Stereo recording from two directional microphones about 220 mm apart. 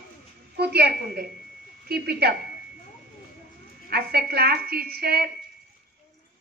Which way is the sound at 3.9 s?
45° right (ahead or behind).